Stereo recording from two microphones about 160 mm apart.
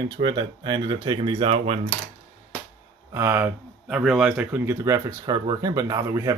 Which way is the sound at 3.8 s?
Centre (ahead or behind).